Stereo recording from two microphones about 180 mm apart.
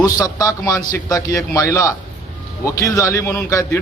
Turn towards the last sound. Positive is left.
turn(degrees=15)  # may be behind; listen again after turning